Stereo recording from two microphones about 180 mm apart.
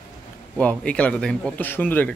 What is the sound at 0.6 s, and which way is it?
Speech, 5° left (ahead or behind).